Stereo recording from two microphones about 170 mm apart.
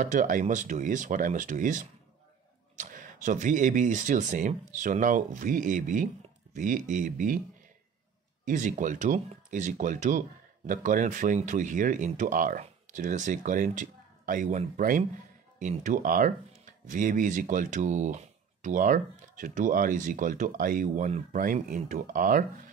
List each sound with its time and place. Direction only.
0.0 s speech: 50° right (ahead or behind)
8.5 s speech: 50° right (ahead or behind)